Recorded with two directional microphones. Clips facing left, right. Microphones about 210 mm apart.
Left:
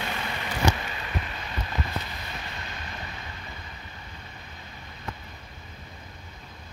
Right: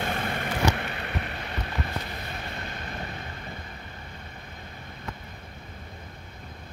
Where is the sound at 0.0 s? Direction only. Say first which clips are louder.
Right 4 dB; 50° right (ahead or behind).